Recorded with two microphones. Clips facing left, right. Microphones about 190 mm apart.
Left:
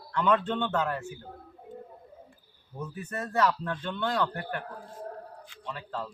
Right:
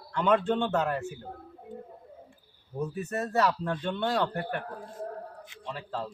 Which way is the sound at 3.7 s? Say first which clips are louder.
Right 2 dB; 25° right (ahead or behind).